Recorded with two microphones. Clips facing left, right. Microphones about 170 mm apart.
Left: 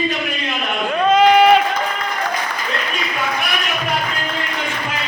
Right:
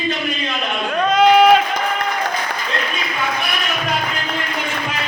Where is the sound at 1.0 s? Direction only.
Centre (ahead or behind).